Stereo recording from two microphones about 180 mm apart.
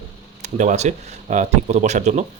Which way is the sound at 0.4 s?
45° right (ahead or behind).